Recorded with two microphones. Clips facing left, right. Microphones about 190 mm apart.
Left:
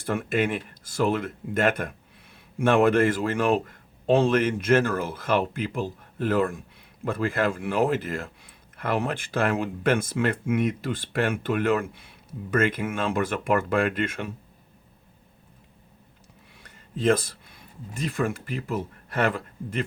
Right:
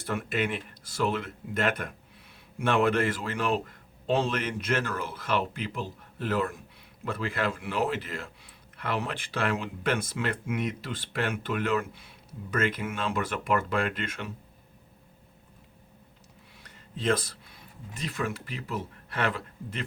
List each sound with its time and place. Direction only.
0.0 s speech: 50° left (ahead or behind)
17.0 s speech: 50° left (ahead or behind)